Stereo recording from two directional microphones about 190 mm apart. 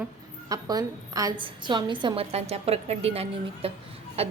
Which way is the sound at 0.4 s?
20° right (ahead or behind).